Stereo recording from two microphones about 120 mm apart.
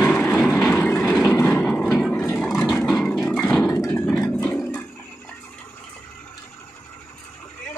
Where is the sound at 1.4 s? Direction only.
10° left (ahead or behind).